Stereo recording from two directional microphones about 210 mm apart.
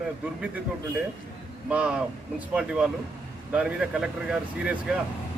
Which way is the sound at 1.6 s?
5° right (ahead or behind).